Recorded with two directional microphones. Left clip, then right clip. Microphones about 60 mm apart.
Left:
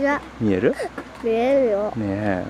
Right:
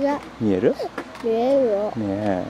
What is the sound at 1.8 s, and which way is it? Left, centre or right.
Speech, left.